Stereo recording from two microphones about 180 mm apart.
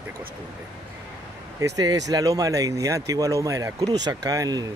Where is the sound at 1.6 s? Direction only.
20° right (ahead or behind).